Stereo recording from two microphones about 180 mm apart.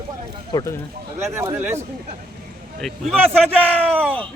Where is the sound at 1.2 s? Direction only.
15° right (ahead or behind).